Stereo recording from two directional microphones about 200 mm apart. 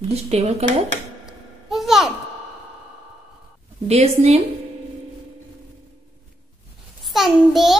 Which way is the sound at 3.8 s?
30° right (ahead or behind).